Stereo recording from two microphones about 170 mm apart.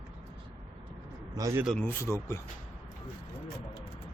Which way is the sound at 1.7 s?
15° left (ahead or behind).